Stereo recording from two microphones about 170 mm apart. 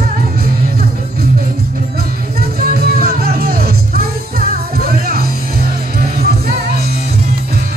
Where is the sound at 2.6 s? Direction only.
60° right (ahead or behind).